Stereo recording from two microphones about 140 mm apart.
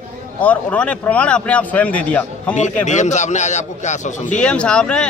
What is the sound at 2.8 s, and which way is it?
A man's voice, 60° left (ahead or behind).